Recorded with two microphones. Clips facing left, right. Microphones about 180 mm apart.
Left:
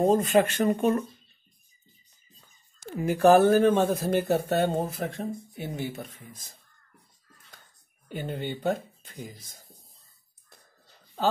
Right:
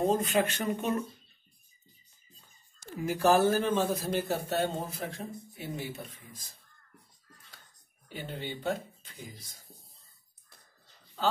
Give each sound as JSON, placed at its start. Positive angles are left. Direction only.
{"t": 0.0, "sound": "speech", "side_deg": 45}
{"t": 2.8, "sound": "speech", "side_deg": 60}
{"t": 8.1, "sound": "speech", "side_deg": 50}